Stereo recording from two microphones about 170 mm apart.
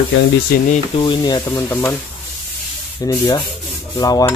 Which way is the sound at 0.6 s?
45° left (ahead or behind).